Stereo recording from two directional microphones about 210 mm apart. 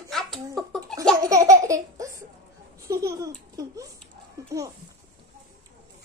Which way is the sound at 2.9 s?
15° right (ahead or behind).